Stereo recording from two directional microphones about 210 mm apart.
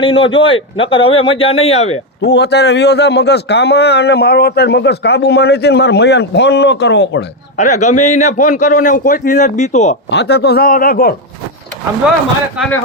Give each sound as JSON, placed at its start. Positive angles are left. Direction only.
{"t": 0.0, "sound": "speech", "side_deg": 25}
{"t": 2.2, "sound": "a man's voice", "side_deg": 50}
{"t": 7.5, "sound": "a man's voice", "side_deg": 35}
{"t": 10.1, "sound": "a man's voice", "side_deg": 50}